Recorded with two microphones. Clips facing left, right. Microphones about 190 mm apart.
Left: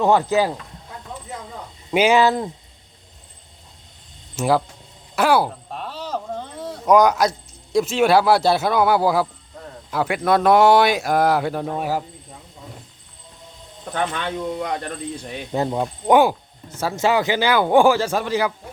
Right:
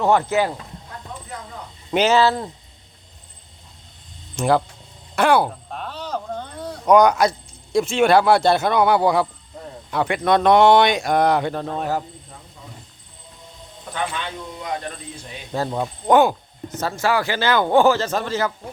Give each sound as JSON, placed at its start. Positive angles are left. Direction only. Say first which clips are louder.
{"t": 0.0, "sound": "speech", "louder": "left 1 dB", "side_deg": 15}
{"t": 1.9, "sound": "speech", "louder": "left 1 dB", "side_deg": 10}
{"t": 4.4, "sound": "speech", "louder": "right 1 dB", "side_deg": 5}
{"t": 5.1, "sound": "a sound", "louder": "right 1 dB", "side_deg": 5}
{"t": 9.9, "sound": "speech", "louder": "even", "side_deg": 5}
{"t": 13.9, "sound": "speech", "louder": "left 3 dB", "side_deg": 50}
{"t": 15.5, "sound": "speech", "louder": "left 2 dB", "side_deg": 20}
{"t": 15.8, "sound": "speech", "louder": "even", "side_deg": 10}
{"t": 16.9, "sound": "speech", "louder": "left 3 dB", "side_deg": 20}